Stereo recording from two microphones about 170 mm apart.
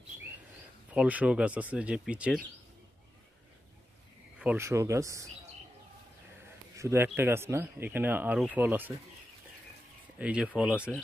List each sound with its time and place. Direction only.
0.9 s speech: 10° right (ahead or behind)
4.4 s speech: 10° right (ahead or behind)
6.8 s speech: 15° right (ahead or behind)
10.1 s speech: 5° right (ahead or behind)